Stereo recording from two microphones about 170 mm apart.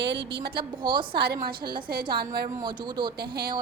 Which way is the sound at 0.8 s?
30° right (ahead or behind).